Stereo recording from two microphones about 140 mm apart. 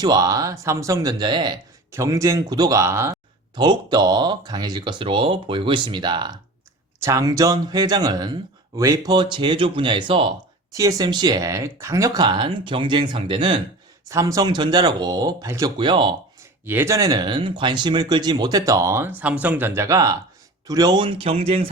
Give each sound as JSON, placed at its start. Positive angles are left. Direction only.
{"t": 0.0, "sound": "speech", "side_deg": -25}
{"t": 1.9, "sound": "speech", "side_deg": -20}
{"t": 3.5, "sound": "speech", "side_deg": -30}
{"t": 9.1, "sound": "speech", "side_deg": -35}
{"t": 10.8, "sound": "speech", "side_deg": -25}
{"t": 14.1, "sound": "speech", "side_deg": -25}
{"t": 15.8, "sound": "speech", "side_deg": -35}
{"t": 16.6, "sound": "speech", "side_deg": -15}